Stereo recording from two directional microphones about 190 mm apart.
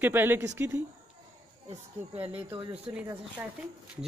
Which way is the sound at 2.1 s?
10° right (ahead or behind).